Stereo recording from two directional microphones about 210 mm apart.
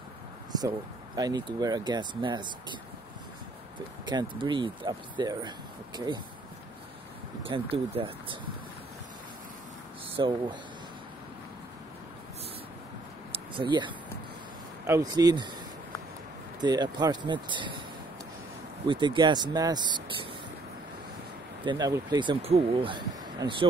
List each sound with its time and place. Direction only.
1.1 s speech: 20° right (ahead or behind)
4.0 s speech: 20° right (ahead or behind)
7.4 s speech: 25° right (ahead or behind)
10.1 s speech: 20° right (ahead or behind)
13.3 s a sound: 25° right (ahead or behind)
14.9 s speech: 15° right (ahead or behind)
16.6 s speech: 20° right (ahead or behind)
18.9 s speech: 20° right (ahead or behind)
21.6 s speech: 20° right (ahead or behind)